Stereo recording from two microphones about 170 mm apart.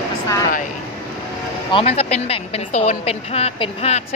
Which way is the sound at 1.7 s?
35° left (ahead or behind).